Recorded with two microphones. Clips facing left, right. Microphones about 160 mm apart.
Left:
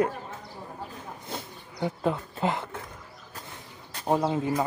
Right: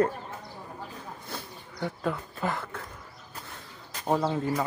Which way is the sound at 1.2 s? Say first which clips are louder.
Left 2 dB; 20° left (ahead or behind).